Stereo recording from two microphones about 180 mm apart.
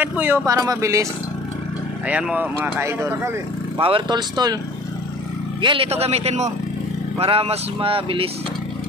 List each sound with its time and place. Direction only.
0.0 s speech: 10° right (ahead or behind)
2.0 s speech: 5° right (ahead or behind)
3.7 s speech: 25° right (ahead or behind)
5.6 s speech: 30° right (ahead or behind)